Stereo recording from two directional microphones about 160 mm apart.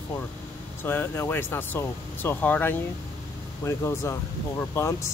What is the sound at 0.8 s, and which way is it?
Speech, 15° left (ahead or behind).